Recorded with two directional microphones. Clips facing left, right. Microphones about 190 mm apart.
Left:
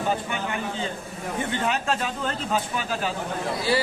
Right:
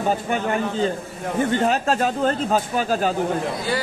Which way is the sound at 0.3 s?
40° right (ahead or behind).